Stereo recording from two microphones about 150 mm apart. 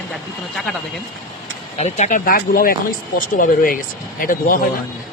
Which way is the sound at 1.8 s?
50° left (ahead or behind).